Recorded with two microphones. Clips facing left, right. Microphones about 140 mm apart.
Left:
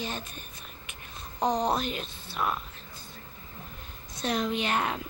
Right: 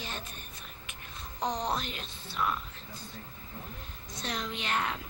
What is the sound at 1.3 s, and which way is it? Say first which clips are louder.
Speech: left 6 dB; 50° left (ahead or behind).